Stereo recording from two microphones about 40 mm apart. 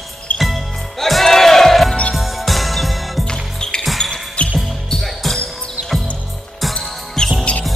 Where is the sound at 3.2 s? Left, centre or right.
Centre.